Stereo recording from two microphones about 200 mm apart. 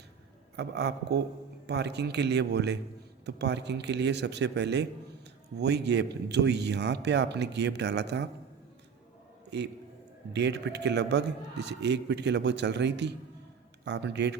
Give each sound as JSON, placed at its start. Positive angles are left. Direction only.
{"t": 0.5, "sound": "a man's voice", "side_deg": -55}
{"t": 10.3, "sound": "a man's voice", "side_deg": -60}